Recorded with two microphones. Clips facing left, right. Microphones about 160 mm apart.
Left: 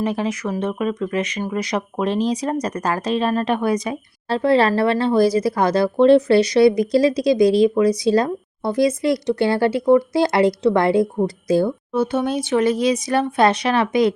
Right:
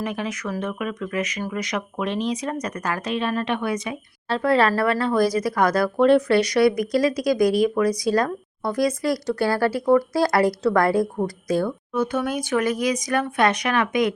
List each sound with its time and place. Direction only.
0.0 s speech: 30° left (ahead or behind)